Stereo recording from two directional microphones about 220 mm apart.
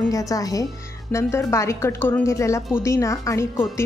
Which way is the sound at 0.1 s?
15° left (ahead or behind).